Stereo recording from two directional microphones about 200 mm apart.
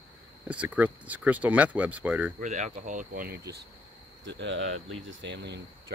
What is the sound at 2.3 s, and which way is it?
Speech, 35° right (ahead or behind).